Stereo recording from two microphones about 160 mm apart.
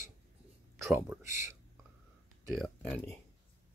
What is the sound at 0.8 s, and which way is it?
Speech, 15° right (ahead or behind).